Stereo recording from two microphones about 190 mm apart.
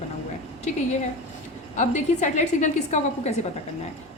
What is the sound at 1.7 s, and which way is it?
A woman's voice, 40° left (ahead or behind).